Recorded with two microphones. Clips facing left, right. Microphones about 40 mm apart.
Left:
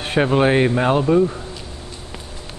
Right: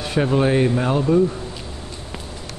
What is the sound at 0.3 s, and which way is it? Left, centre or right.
Speech, left.